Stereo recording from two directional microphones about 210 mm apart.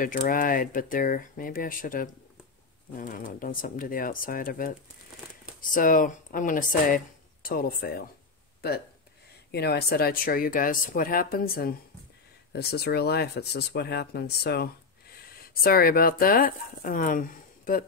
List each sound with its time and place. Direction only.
0.0 s speech: 40° left (ahead or behind)
5.8 s speech: 40° left (ahead or behind)
9.5 s speech: 50° left (ahead or behind)